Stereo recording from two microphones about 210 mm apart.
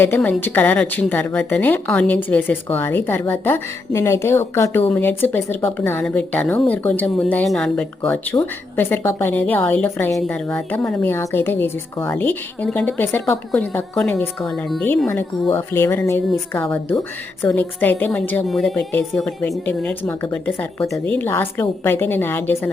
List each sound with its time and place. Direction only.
0.0 s speech: 10° left (ahead or behind)